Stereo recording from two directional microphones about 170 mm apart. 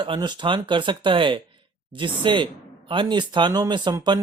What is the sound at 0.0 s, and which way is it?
Speech, 25° right (ahead or behind).